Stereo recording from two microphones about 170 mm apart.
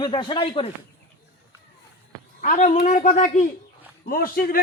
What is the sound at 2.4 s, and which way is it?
A woman's voice, 45° left (ahead or behind).